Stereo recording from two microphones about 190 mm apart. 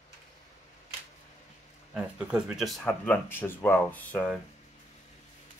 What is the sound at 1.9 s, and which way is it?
Speech, 5° right (ahead or behind).